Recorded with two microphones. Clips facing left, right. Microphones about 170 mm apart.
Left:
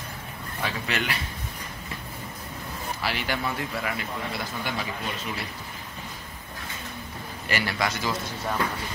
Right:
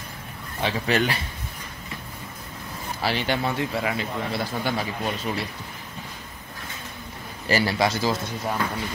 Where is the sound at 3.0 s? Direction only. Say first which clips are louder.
Right 5 dB; 30° right (ahead or behind).